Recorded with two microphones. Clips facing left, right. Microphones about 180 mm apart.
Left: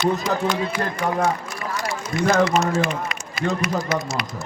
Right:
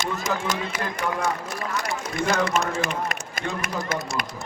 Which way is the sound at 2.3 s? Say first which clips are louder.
Left 5 dB; 55° right (ahead or behind).